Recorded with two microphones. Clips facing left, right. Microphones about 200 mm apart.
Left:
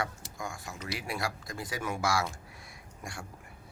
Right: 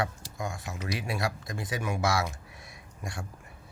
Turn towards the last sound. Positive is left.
turn(degrees=-20)  # may be behind; listen again after turning